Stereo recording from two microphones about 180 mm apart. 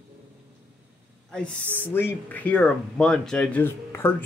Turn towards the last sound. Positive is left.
turn(degrees=10)  # may be behind; listen again after turning